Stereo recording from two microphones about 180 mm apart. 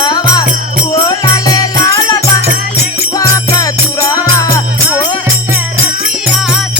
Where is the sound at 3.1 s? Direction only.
20° left (ahead or behind).